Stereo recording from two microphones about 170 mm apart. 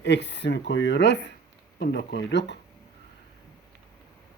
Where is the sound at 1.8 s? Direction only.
75° left (ahead or behind).